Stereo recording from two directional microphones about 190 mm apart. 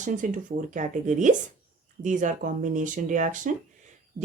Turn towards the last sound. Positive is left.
turn(degrees=-40)  # may be behind; listen again after turning